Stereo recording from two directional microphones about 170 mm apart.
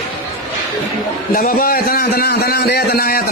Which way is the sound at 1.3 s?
60° left (ahead or behind).